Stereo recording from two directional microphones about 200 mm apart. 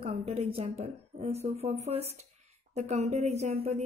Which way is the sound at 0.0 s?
30° right (ahead or behind).